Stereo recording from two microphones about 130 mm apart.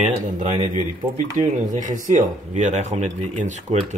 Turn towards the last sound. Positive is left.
turn(degrees=-65)  # may be behind; listen again after turning